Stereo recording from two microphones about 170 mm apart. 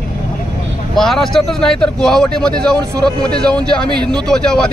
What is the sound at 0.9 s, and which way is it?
Speech, centre (ahead or behind).